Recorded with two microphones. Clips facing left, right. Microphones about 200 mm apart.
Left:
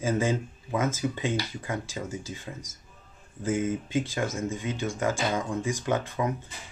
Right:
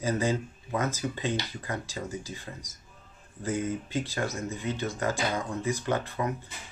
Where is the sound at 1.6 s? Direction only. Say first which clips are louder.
Left 2 dB; 15° left (ahead or behind).